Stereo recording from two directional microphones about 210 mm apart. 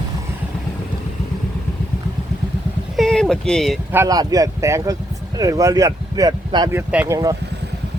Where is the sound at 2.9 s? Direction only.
Centre (ahead or behind).